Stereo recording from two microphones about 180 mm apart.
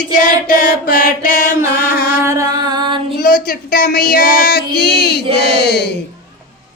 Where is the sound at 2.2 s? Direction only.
20° right (ahead or behind).